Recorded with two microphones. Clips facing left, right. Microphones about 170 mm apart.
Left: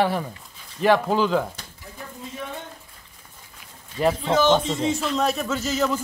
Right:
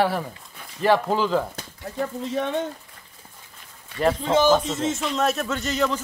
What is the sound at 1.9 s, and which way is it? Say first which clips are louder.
Speech: right 10 dB; 80° right.